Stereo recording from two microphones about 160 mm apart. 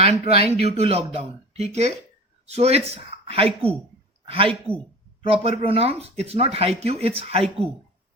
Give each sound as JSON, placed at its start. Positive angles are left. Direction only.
{"t": 0.3, "sound": "speech", "side_deg": -40}